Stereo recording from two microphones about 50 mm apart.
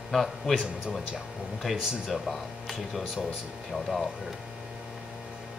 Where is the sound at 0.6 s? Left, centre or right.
Centre.